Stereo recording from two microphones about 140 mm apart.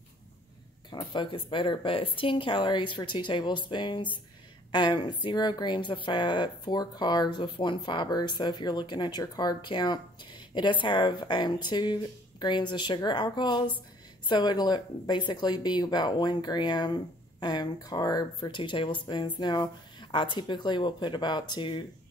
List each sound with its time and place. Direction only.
0.8 s speech: 35° left (ahead or behind)